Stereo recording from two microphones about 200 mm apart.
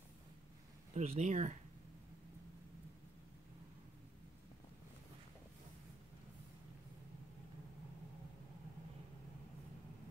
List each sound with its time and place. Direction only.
0.9 s speech: 35° right (ahead or behind)